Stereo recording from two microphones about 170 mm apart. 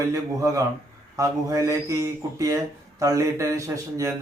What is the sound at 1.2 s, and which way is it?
Speech, 20° right (ahead or behind).